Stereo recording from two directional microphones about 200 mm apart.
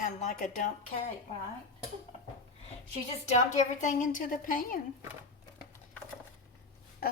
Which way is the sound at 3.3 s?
35° left (ahead or behind).